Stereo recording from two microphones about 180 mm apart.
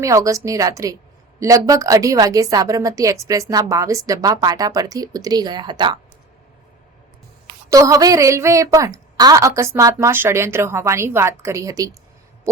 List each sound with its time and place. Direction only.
0.0 s a woman's voice: 20° right (ahead or behind)
7.7 s a woman's voice: 20° right (ahead or behind)